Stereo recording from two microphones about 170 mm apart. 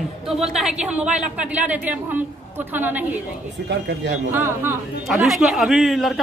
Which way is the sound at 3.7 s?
90° right.